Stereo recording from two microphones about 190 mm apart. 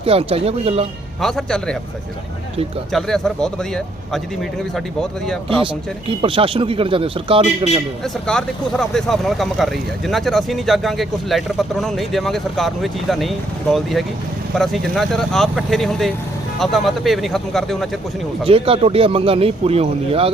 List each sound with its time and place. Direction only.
0.0 s speech: 30° right (ahead or behind)
1.2 s speech: 5° left (ahead or behind)
2.9 s speech: centre (ahead or behind)
6.1 s speech: 25° right (ahead or behind)
8.0 s speech: 5° left (ahead or behind)
18.4 s speech: 30° right (ahead or behind)